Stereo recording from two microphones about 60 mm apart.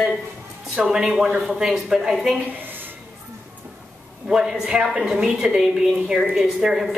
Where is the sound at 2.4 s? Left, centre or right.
Right.